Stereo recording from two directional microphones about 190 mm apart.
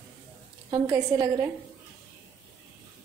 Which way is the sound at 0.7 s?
20° right (ahead or behind).